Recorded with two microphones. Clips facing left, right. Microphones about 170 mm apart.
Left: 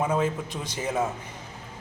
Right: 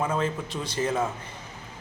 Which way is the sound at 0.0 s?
15° left (ahead or behind).